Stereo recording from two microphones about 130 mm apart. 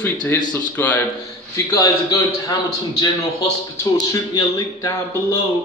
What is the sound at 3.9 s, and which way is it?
A man's voice, 30° left (ahead or behind).